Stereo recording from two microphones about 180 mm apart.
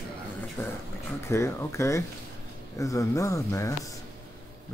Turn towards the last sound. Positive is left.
turn(degrees=15)  # may be behind; listen again after turning